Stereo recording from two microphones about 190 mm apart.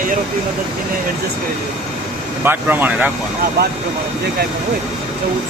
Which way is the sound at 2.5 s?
10° right (ahead or behind).